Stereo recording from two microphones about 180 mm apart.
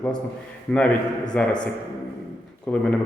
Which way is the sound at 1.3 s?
10° left (ahead or behind).